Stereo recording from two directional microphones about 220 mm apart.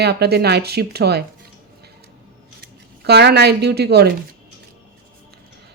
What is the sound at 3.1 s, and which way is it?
Speech, 50° right (ahead or behind).